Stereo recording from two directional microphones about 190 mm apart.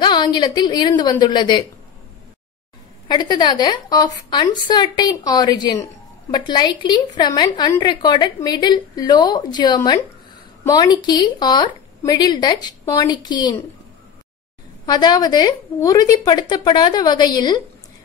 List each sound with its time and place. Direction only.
0.0 s a woman's voice: 25° left (ahead or behind)
3.1 s a woman's voice: 20° left (ahead or behind)
14.9 s a woman's voice: 20° left (ahead or behind)